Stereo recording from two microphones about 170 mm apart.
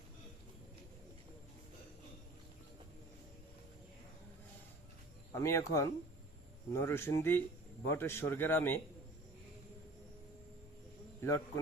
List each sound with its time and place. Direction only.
5.3 s a man's voice: 15° left (ahead or behind)
11.2 s a man's voice: 15° left (ahead or behind)